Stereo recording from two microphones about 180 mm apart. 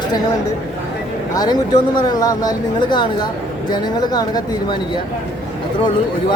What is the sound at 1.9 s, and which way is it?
Speech, 20° left (ahead or behind).